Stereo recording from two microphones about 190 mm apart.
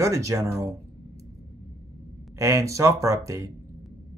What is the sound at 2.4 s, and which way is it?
Speech, 15° right (ahead or behind).